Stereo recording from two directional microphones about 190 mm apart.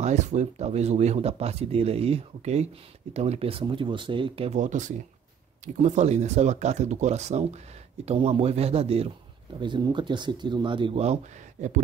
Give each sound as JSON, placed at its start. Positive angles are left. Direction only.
{"t": 0.0, "sound": "speech", "side_deg": -35}